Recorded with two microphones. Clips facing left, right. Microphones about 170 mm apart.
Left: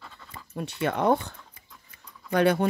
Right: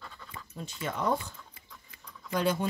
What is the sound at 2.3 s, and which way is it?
Speech, 65° left (ahead or behind).